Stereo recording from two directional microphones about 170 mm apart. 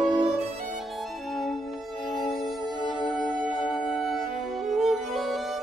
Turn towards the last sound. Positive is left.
turn(degrees=0)  # may be behind; listen again after turning